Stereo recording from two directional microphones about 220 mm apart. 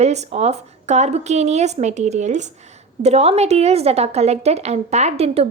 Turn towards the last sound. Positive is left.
turn(degrees=-25)  # may be behind; listen again after turning